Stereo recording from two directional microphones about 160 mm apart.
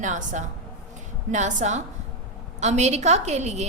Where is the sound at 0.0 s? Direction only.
50° right (ahead or behind).